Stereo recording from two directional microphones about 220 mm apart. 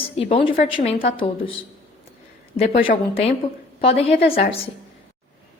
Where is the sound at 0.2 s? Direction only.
25° left (ahead or behind).